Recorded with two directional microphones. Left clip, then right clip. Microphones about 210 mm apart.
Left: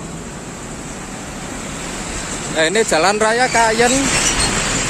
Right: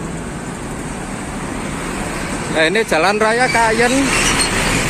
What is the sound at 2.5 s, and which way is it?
Speech, 5° left (ahead or behind).